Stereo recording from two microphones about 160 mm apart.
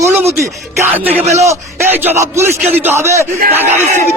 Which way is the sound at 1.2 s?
45° right (ahead or behind).